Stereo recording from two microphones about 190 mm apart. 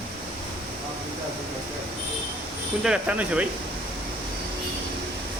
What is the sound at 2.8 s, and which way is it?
Speech, 5° right (ahead or behind).